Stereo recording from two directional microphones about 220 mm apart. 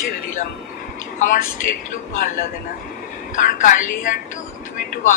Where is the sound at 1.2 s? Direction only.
35° left (ahead or behind).